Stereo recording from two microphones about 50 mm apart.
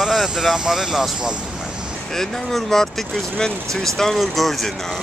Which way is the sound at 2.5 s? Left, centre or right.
Centre.